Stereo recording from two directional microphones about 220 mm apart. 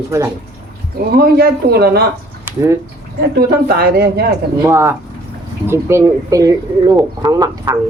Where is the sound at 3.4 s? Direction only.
45° right (ahead or behind).